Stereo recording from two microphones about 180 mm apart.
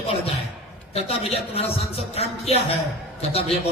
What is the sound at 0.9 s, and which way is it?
A man's voice, 35° left (ahead or behind).